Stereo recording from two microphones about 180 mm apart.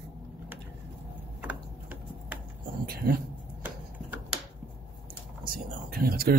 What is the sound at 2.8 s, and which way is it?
Speech, 55° right (ahead or behind).